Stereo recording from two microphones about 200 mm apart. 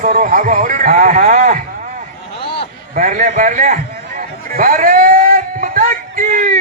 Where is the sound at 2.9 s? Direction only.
40° right (ahead or behind).